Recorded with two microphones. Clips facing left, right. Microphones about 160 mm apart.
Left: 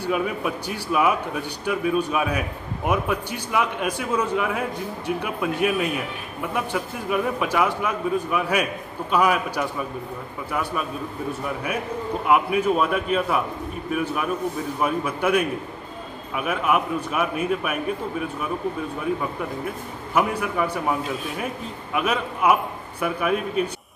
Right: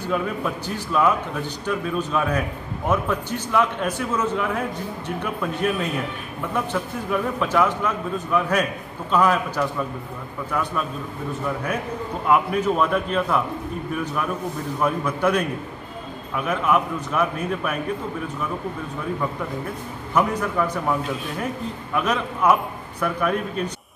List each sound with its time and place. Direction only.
0.0 s a man's voice: 10° left (ahead or behind)
12.3 s a man's voice: 10° left (ahead or behind)
14.8 s a man's voice: 10° left (ahead or behind)
20.2 s a man's voice: 10° left (ahead or behind)
21.9 s a man's voice: 10° left (ahead or behind)